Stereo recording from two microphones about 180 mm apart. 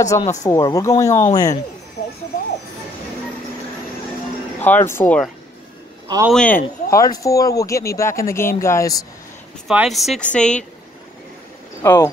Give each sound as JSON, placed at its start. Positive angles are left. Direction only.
{"t": 0.0, "sound": "speech", "side_deg": 20}
{"t": 4.6, "sound": "speech", "side_deg": 10}
{"t": 6.0, "sound": "a man's voice", "side_deg": -20}
{"t": 6.3, "sound": "speech", "side_deg": 5}
{"t": 6.9, "sound": "speech", "side_deg": 20}
{"t": 9.7, "sound": "speech", "side_deg": 0}
{"t": 11.8, "sound": "speech", "side_deg": 15}